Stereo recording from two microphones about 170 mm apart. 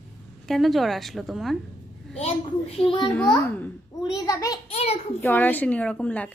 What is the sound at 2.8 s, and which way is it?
Speech, 25° left (ahead or behind).